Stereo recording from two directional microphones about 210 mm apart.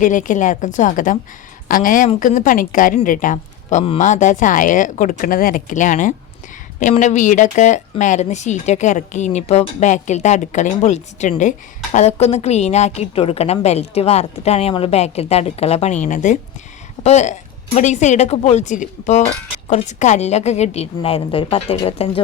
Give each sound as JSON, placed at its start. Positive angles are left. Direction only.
{"t": 0.0, "sound": "speech", "side_deg": 40}